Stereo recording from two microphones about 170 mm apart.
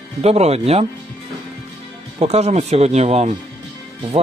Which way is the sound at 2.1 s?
40° right (ahead or behind).